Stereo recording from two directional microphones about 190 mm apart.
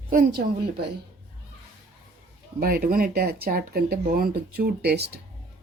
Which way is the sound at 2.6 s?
50° right (ahead or behind).